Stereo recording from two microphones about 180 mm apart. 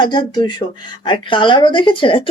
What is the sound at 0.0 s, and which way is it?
A woman's voice, 25° left (ahead or behind).